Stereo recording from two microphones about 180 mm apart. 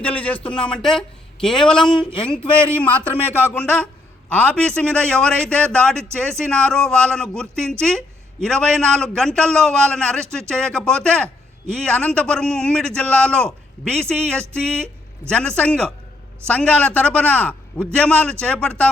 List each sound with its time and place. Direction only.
0.0 s a man's voice: 5° left (ahead or behind)
1.9 s speech: 25° left (ahead or behind)
2.2 s a man's voice: 5° left (ahead or behind)
15.3 s a man's voice: 5° left (ahead or behind)